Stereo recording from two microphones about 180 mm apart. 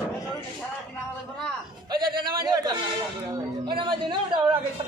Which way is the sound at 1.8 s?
25° right (ahead or behind).